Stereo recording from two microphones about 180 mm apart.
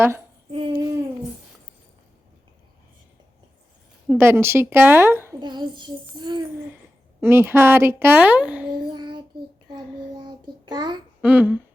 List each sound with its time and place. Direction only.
0.5 s babbling: 30° right (ahead or behind)
4.1 s a woman's voice: 15° right (ahead or behind)
7.2 s a woman's voice: 15° right (ahead or behind)
8.9 s child singing: 25° right (ahead or behind)
10.2 s a sound: 25° right (ahead or behind)
11.2 s humming: 10° right (ahead or behind)